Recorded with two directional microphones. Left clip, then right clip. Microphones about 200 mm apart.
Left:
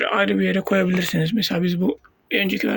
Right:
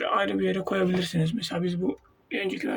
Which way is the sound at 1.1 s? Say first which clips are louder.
Left 7 dB; 25° left (ahead or behind).